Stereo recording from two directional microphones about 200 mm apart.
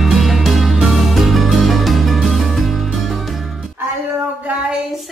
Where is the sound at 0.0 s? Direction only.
Centre (ahead or behind).